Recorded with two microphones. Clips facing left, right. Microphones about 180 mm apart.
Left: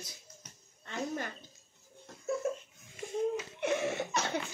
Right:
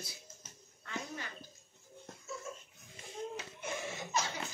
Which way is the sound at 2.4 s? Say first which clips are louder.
Left 13 dB; 65° left (ahead or behind).